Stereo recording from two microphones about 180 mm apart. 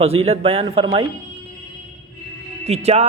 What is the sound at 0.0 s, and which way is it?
A man's voice, 35° right (ahead or behind).